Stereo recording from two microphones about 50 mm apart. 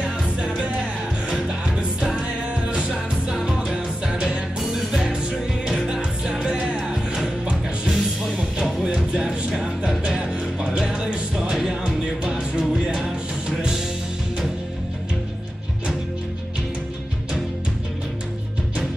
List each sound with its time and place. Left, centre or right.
0.0 s music: right